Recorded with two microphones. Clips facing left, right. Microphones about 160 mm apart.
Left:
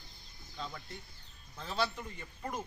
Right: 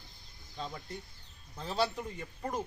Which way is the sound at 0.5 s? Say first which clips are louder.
Right 3 dB; 35° right (ahead or behind).